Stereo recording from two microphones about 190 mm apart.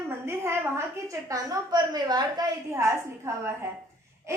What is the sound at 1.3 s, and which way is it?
A woman's voice, 20° right (ahead or behind).